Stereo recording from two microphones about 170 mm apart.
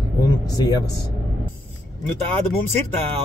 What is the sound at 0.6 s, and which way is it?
Speech, 20° left (ahead or behind).